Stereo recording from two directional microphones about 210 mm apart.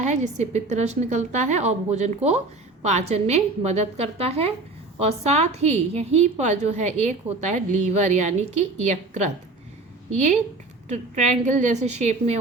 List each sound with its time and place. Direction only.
0.0 s a woman's voice: 35° right (ahead or behind)
10.8 s a woman's voice: 35° right (ahead or behind)